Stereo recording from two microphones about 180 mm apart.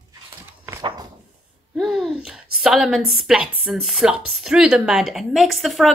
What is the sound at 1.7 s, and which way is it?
A woman's voice, centre (ahead or behind).